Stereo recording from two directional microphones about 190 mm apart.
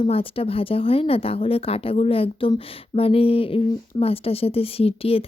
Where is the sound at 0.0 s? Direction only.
30° left (ahead or behind).